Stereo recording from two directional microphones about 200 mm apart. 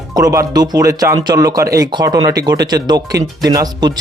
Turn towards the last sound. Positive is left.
turn(degrees=-20)  # may be behind; listen again after turning